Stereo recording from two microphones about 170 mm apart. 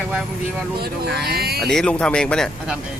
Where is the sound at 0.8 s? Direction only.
70° right (ahead or behind).